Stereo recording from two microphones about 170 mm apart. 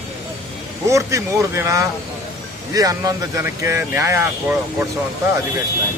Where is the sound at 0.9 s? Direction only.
15° right (ahead or behind).